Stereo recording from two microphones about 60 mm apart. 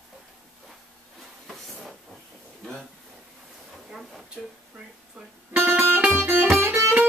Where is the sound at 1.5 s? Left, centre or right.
Centre.